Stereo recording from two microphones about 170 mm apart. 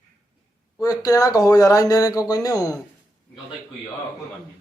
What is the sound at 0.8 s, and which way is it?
Speech, 20° left (ahead or behind).